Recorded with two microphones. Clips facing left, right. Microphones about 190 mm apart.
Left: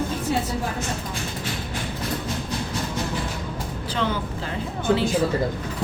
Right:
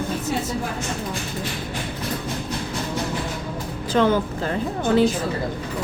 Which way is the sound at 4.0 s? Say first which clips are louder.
Right 8 dB; 50° right (ahead or behind).